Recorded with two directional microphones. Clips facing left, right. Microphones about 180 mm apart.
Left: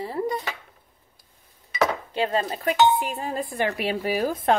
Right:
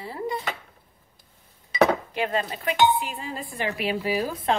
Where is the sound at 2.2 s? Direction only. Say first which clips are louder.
Left 6 dB; 30° left (ahead or behind).